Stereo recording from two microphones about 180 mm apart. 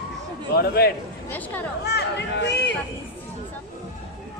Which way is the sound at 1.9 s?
70° left (ahead or behind).